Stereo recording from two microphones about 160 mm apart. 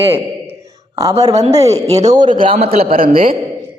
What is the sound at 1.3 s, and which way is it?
Speech, 45° right (ahead or behind).